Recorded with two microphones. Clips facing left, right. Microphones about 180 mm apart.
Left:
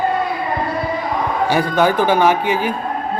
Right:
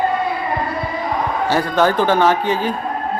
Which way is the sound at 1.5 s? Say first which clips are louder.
Even; 10° left (ahead or behind).